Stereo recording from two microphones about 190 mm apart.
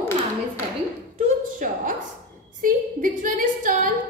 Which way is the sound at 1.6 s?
45° right (ahead or behind).